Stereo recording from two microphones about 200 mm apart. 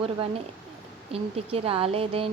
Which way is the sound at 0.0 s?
25° right (ahead or behind).